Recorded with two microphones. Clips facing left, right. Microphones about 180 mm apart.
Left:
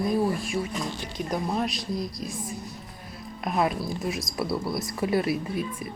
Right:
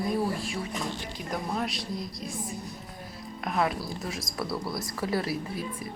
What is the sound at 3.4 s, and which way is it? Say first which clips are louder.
Speech: left 2 dB; 20° left (ahead or behind).